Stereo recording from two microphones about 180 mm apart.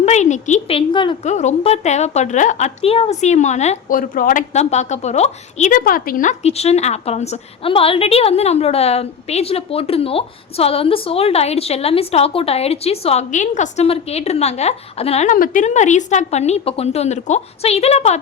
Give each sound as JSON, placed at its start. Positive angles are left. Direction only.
{"t": 0.0, "sound": "a woman's voice", "side_deg": 40}
{"t": 1.2, "sound": "a woman's voice", "side_deg": 40}